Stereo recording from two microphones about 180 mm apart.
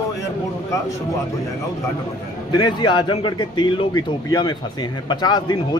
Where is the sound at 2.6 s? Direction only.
25° left (ahead or behind).